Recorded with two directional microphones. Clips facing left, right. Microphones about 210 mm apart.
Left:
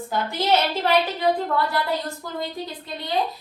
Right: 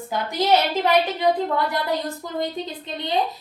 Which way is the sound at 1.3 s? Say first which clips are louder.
Right 1 dB; 15° right (ahead or behind).